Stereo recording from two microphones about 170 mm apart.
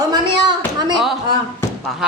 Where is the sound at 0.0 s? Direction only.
25° right (ahead or behind).